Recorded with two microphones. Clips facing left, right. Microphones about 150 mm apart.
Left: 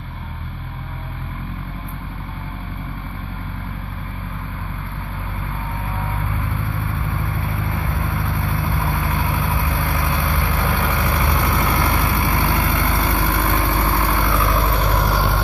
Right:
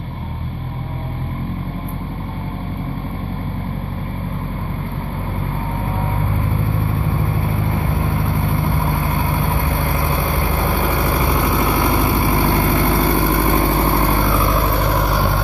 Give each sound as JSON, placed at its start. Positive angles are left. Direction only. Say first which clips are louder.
{"t": 5.9, "sound": "vehicle", "louder": "right 4 dB", "side_deg": -20}
{"t": 11.0, "sound": "vehicle", "louder": "right 3 dB", "side_deg": -15}
{"t": 14.5, "sound": "vehicle", "louder": "right 2 dB", "side_deg": 0}